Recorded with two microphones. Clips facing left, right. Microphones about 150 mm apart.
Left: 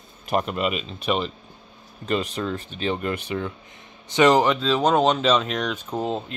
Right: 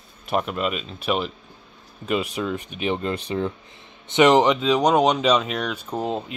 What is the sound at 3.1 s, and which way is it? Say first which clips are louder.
Speech: right 2 dB; 30° right (ahead or behind).